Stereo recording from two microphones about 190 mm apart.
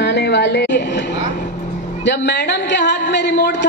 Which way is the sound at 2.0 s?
65° left (ahead or behind).